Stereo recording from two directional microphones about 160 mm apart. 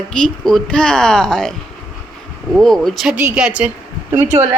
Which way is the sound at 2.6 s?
Centre (ahead or behind).